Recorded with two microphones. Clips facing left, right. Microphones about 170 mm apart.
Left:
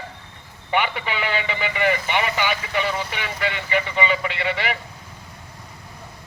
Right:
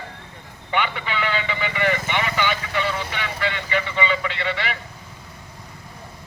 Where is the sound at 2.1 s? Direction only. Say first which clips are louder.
Left 1 dB; 15° left (ahead or behind).